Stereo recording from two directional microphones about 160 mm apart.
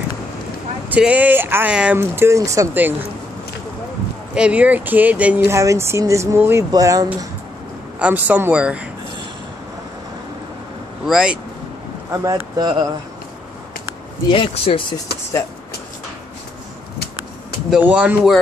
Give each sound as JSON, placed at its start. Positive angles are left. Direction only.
{"t": 0.8, "sound": "speech", "side_deg": -10}
{"t": 4.4, "sound": "speech", "side_deg": -10}
{"t": 8.0, "sound": "speech", "side_deg": -10}
{"t": 11.1, "sound": "speech", "side_deg": -5}
{"t": 12.3, "sound": "speech", "side_deg": -25}
{"t": 14.3, "sound": "speech", "side_deg": 35}
{"t": 17.6, "sound": "speech", "side_deg": -5}